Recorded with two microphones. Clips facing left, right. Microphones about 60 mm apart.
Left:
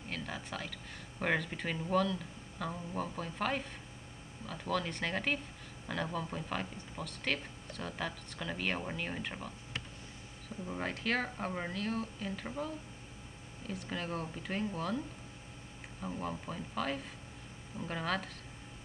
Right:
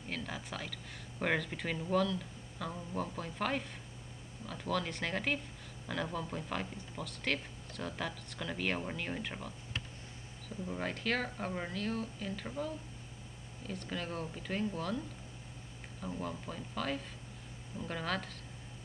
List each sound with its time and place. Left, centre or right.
0.1 s a sound: centre
1.2 s speech: centre
10.7 s speech: centre
13.7 s speech: centre
16.0 s speech: centre